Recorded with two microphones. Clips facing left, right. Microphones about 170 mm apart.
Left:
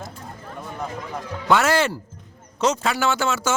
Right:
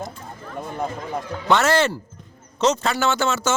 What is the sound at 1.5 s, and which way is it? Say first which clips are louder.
A man's voice: right 1 dB; 10° left (ahead or behind).